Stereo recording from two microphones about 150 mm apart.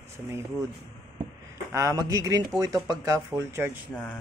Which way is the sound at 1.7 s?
20° right (ahead or behind).